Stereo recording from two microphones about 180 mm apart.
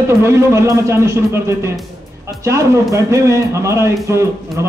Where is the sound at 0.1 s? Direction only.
15° right (ahead or behind).